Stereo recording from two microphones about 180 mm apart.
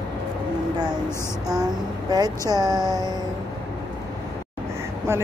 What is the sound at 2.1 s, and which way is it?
Speech, 20° right (ahead or behind).